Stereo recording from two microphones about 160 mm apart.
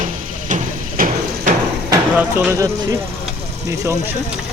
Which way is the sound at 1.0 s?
60° right (ahead or behind).